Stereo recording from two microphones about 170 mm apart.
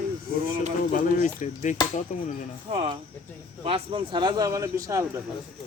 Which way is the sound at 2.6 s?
35° right (ahead or behind).